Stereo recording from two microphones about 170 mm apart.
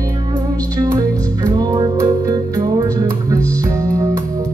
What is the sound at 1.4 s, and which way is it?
Music, 20° right (ahead or behind).